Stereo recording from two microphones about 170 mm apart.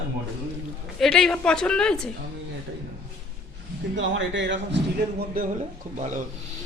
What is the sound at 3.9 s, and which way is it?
Speech, 90° right.